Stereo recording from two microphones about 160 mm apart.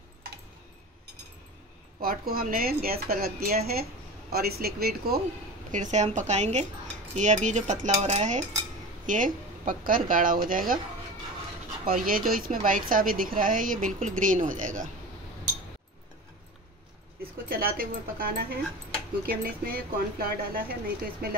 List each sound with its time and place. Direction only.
2.0 s speech: 65° right (ahead or behind)
5.7 s cutlery: 50° right (ahead or behind)
9.0 s speech: 55° right (ahead or behind)
11.8 s speech: 60° right (ahead or behind)
14.2 s cutlery: 55° right (ahead or behind)
17.5 s speech: 65° right (ahead or behind)